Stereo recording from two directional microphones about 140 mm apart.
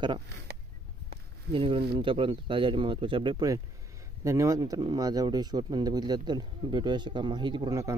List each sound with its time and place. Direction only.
1.5 s speech: 40° right (ahead or behind)